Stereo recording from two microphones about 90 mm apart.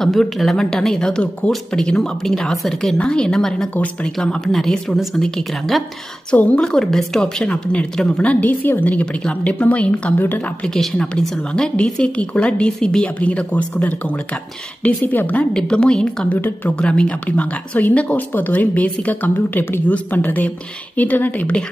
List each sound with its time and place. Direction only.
0.0 s a woman's voice: centre (ahead or behind); by 10.7 s 20° left (ahead or behind)
10.7 s a woman's voice: 5° left (ahead or behind)
16.3 s speech: 20° left (ahead or behind)
16.8 s speech: 10° left (ahead or behind)